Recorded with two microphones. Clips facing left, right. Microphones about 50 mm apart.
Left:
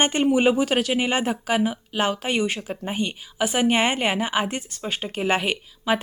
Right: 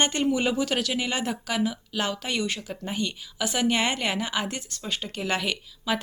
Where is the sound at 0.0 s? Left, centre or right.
Left.